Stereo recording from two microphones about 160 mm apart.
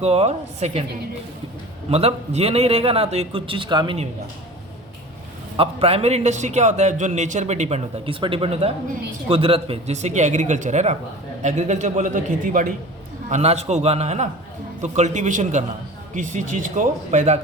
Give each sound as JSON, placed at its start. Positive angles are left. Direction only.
{"t": 0.0, "sound": "a man's voice", "side_deg": -40}
{"t": 1.9, "sound": "a man's voice", "side_deg": -40}
{"t": 5.5, "sound": "a man's voice", "side_deg": -40}
{"t": 13.3, "sound": "a man's voice", "side_deg": -45}